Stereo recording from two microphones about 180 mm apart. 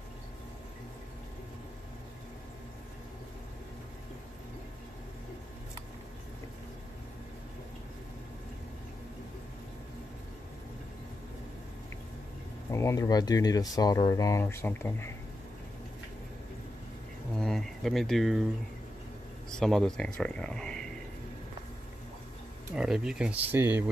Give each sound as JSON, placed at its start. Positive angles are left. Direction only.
{"t": 12.7, "sound": "speech", "side_deg": 15}
{"t": 17.4, "sound": "a sound", "side_deg": 0}
{"t": 19.5, "sound": "speech", "side_deg": 5}
{"t": 22.8, "sound": "speech", "side_deg": -5}